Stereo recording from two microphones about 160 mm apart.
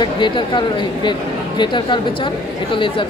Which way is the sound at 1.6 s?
30° left (ahead or behind).